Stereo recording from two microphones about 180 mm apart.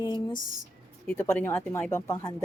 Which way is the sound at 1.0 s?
15° left (ahead or behind).